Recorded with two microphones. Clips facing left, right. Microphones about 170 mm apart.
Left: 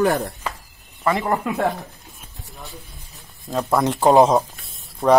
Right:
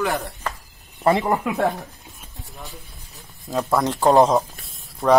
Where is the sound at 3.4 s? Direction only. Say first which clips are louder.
Left 1 dB; centre (ahead or behind).